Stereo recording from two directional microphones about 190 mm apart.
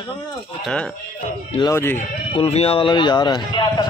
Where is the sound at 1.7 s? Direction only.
10° left (ahead or behind).